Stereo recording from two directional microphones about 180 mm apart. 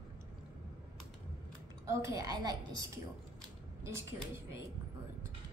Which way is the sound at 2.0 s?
20° right (ahead or behind).